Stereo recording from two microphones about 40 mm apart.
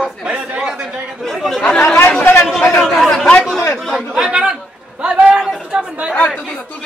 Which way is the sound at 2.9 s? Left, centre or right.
Centre.